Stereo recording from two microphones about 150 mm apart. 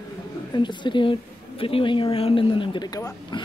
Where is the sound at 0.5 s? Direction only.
30° left (ahead or behind).